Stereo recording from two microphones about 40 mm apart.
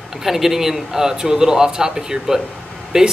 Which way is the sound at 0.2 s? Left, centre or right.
Centre.